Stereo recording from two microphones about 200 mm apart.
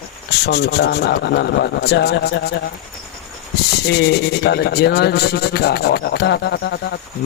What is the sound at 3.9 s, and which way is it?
Speech, 55° left (ahead or behind).